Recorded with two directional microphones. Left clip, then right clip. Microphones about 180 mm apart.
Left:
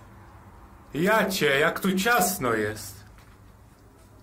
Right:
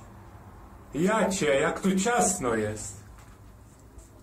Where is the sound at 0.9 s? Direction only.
20° left (ahead or behind).